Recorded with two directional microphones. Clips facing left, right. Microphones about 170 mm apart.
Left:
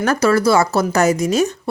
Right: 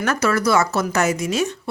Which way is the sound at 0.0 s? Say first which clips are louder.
Left 5 dB; 35° left (ahead or behind).